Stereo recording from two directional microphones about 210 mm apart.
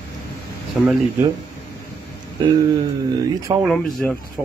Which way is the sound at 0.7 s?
5° right (ahead or behind).